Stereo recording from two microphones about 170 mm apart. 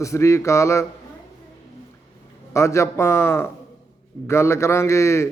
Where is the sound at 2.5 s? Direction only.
15° left (ahead or behind).